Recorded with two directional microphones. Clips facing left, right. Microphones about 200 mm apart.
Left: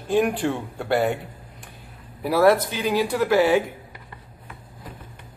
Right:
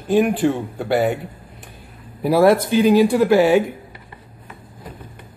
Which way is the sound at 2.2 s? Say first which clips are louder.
Right 3 dB; 15° right (ahead or behind).